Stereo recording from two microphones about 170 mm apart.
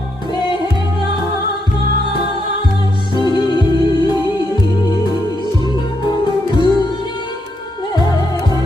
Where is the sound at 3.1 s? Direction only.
25° left (ahead or behind).